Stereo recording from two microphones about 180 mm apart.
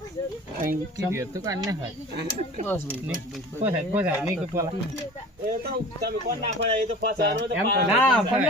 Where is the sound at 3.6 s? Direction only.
15° right (ahead or behind).